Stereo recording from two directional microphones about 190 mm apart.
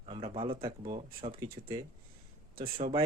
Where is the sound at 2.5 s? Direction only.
50° right (ahead or behind).